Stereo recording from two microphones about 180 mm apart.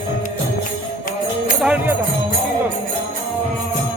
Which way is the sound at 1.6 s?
5° right (ahead or behind).